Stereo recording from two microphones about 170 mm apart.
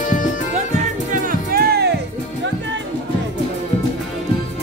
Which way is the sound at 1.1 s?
60° right (ahead or behind).